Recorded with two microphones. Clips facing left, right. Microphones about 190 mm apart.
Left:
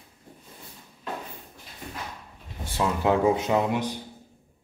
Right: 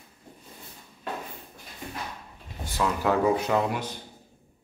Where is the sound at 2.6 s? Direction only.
25° left (ahead or behind).